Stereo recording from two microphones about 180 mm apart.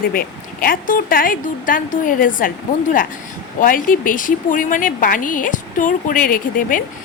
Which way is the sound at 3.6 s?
50° left (ahead or behind).